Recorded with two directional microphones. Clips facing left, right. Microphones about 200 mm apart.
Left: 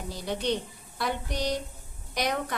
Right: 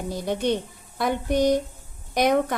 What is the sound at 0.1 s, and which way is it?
A woman's voice, 50° right (ahead or behind).